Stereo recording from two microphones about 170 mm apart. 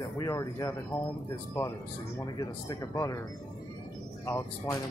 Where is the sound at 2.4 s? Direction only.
20° left (ahead or behind).